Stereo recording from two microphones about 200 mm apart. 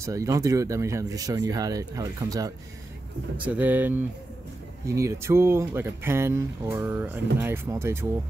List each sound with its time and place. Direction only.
0.0 s speech: 15° right (ahead or behind)
3.3 s speech: 10° right (ahead or behind)